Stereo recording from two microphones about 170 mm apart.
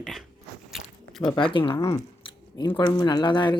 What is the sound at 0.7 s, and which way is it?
Zipper, centre (ahead or behind).